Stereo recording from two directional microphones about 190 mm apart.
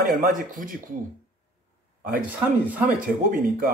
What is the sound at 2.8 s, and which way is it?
Speech, 45° right (ahead or behind).